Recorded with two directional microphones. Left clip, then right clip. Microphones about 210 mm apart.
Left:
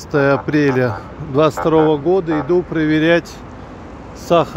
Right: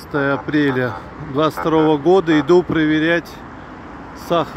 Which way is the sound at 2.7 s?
10° left (ahead or behind).